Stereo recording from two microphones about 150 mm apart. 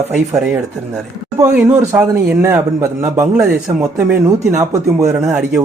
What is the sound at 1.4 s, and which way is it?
Speech, 15° right (ahead or behind).